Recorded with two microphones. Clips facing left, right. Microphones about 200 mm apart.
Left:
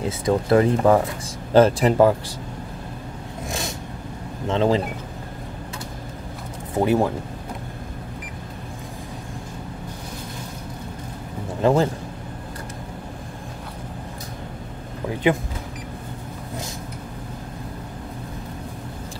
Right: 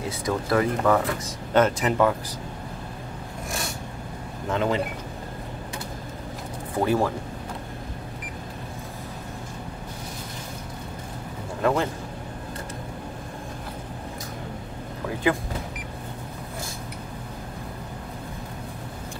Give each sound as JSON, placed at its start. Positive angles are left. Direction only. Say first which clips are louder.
{"t": 0.2, "sound": "speech", "louder": "left 6 dB", "side_deg": 25}
{"t": 3.4, "sound": "a sound", "louder": "left 3 dB", "side_deg": 20}
{"t": 4.5, "sound": "speech", "louder": "left 5 dB", "side_deg": 30}
{"t": 6.7, "sound": "speech", "louder": "left 3 dB", "side_deg": 20}
{"t": 11.6, "sound": "speech", "louder": "left 5 dB", "side_deg": 30}